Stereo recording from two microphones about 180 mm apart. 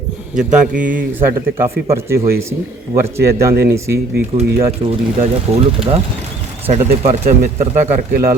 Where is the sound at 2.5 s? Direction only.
15° right (ahead or behind).